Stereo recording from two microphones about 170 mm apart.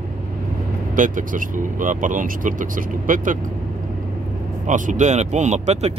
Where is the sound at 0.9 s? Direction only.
50° right (ahead or behind).